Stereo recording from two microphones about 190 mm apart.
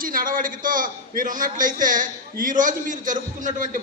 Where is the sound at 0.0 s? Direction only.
50° right (ahead or behind).